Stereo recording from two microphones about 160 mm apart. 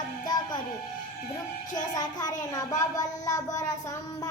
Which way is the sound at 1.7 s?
25° left (ahead or behind).